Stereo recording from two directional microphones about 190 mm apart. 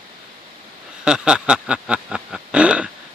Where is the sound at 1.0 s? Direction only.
5° right (ahead or behind).